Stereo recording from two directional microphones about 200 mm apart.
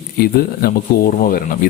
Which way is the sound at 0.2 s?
50° left (ahead or behind).